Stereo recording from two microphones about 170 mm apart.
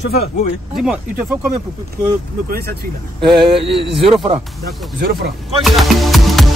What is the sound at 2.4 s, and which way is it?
Speech, 65° right (ahead or behind).